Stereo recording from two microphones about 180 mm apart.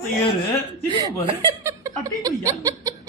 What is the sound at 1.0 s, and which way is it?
Chuckle, 20° right (ahead or behind).